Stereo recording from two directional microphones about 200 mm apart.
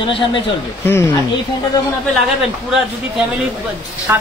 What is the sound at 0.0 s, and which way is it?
Speech, 25° left (ahead or behind).